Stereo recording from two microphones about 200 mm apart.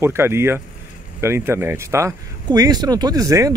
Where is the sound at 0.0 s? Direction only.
10° right (ahead or behind).